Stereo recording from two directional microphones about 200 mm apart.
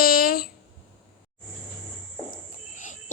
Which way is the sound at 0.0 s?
45° left (ahead or behind).